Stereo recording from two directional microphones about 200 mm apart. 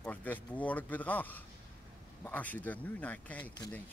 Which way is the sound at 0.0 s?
10° left (ahead or behind).